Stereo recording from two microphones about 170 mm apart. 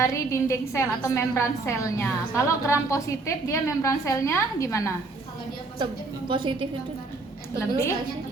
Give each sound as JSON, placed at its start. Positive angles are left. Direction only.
{"t": 0.0, "sound": "a woman's voice", "side_deg": 15}
{"t": 5.8, "sound": "a woman's voice", "side_deg": -30}